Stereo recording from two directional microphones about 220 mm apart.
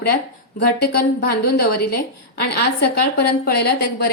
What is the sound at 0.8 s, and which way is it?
A woman's voice, 45° left (ahead or behind).